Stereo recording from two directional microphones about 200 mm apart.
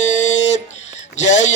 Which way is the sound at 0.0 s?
35° left (ahead or behind).